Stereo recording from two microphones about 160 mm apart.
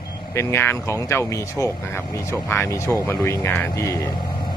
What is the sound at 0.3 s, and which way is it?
Speech, 15° left (ahead or behind).